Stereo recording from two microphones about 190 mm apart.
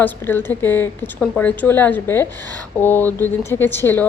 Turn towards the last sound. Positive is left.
turn(degrees=10)  # may be behind; listen again after turning